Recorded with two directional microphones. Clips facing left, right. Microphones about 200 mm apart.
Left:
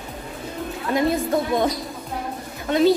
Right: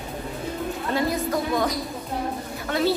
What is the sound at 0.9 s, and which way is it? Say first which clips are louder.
Speech: left 5 dB; 25° left (ahead or behind).